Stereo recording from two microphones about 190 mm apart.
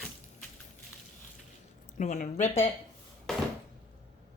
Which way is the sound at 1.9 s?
40° left (ahead or behind).